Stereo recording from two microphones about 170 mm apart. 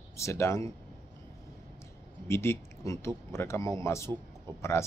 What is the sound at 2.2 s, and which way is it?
Speech, 15° left (ahead or behind).